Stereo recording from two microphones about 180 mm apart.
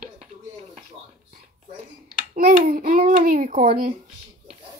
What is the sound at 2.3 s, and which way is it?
A child's voice, 50° right (ahead or behind).